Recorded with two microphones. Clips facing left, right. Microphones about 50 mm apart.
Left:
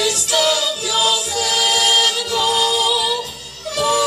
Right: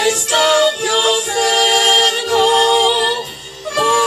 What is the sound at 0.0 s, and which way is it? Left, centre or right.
Music, right.